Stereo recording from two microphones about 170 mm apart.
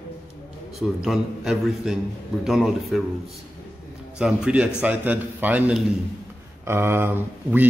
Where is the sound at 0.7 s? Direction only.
Centre (ahead or behind).